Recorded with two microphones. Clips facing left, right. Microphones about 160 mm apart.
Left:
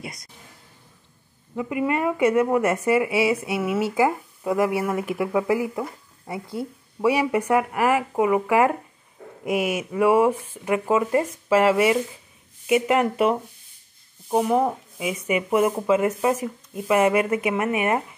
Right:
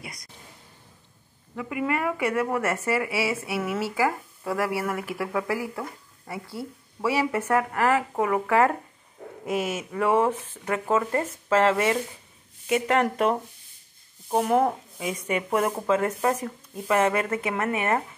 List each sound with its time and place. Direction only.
0.0 s speech: 25° left (ahead or behind)
1.5 s speech: 20° left (ahead or behind); by 14.8 s centre (ahead or behind)
15.0 s speech: 10° left (ahead or behind)